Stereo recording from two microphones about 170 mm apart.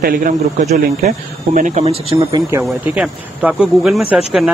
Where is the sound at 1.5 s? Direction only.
45° right (ahead or behind).